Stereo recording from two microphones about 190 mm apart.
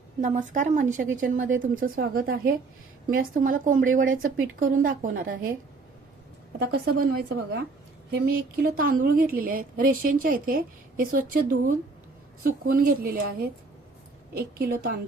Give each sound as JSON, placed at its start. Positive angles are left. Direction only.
{"t": 0.2, "sound": "a woman's voice", "side_deg": -40}
{"t": 6.6, "sound": "a woman's voice", "side_deg": -55}